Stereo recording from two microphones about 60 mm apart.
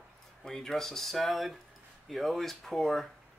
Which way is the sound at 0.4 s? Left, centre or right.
Centre.